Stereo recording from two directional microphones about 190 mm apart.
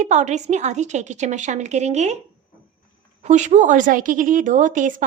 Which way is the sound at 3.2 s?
40° right (ahead or behind).